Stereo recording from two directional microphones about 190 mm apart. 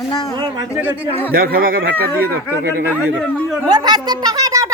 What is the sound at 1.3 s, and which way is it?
Speech, 50° right (ahead or behind).